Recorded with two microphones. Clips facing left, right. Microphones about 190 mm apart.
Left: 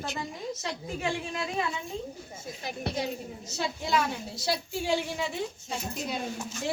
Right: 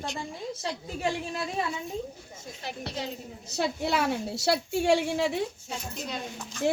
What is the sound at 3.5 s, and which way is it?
A woman's voice, 65° right (ahead or behind).